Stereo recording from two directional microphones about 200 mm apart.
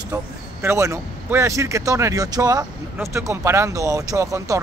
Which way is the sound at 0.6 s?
15° right (ahead or behind).